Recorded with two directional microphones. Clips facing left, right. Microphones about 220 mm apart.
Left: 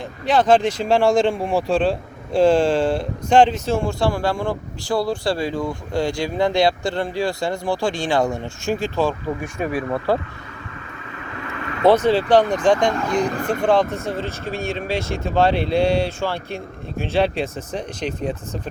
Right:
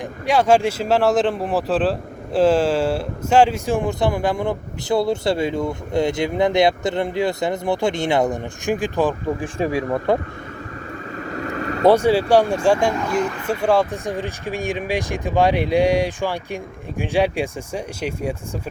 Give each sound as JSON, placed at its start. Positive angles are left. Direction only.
{"t": 0.3, "sound": "speech", "side_deg": -10}
{"t": 9.4, "sound": "speech", "side_deg": -30}
{"t": 11.2, "sound": "vehicle", "side_deg": -40}
{"t": 11.9, "sound": "speech", "side_deg": -10}